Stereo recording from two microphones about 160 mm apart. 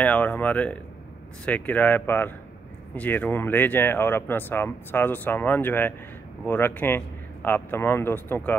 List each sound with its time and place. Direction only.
0.0 s speech: 10° left (ahead or behind)